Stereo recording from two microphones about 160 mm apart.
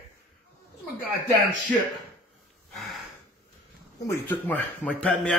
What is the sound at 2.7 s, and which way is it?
Gasp, centre (ahead or behind).